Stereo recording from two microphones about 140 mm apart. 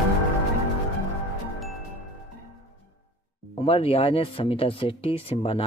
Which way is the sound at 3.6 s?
40° left (ahead or behind).